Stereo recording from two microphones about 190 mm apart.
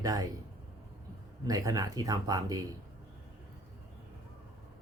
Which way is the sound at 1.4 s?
20° right (ahead or behind).